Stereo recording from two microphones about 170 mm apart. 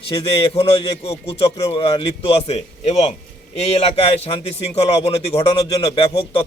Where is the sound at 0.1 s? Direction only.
30° left (ahead or behind).